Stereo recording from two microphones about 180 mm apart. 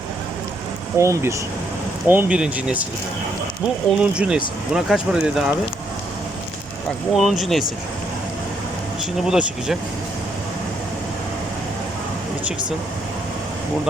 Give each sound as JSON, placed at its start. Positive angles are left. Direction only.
{"t": 0.9, "sound": "speech", "side_deg": -15}
{"t": 4.0, "sound": "speech", "side_deg": -5}
{"t": 7.1, "sound": "speech", "side_deg": 0}
{"t": 9.2, "sound": "speech", "side_deg": -5}